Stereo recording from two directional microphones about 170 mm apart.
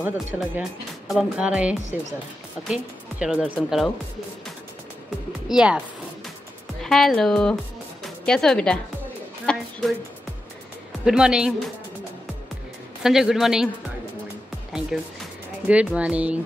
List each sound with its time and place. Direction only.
0.0 s speech: 5° right (ahead or behind)
5.5 s speech: 5° right (ahead or behind)
6.8 s speech: centre (ahead or behind)
11.1 s speech: 5° right (ahead or behind)
13.0 s speech: 5° right (ahead or behind)
14.7 s speech: 5° right (ahead or behind)